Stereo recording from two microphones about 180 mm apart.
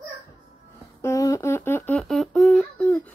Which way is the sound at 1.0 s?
15° left (ahead or behind).